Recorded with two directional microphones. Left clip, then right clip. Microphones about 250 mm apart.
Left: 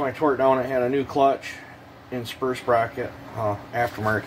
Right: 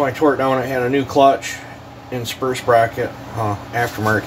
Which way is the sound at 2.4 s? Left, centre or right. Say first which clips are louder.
Right 5 dB; left.